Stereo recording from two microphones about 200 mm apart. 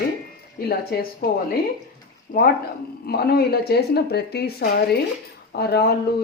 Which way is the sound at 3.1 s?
50° left (ahead or behind).